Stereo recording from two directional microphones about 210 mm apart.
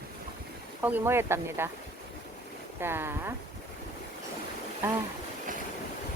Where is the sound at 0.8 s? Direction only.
10° right (ahead or behind).